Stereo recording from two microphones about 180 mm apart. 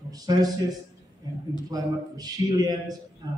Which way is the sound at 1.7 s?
20° right (ahead or behind).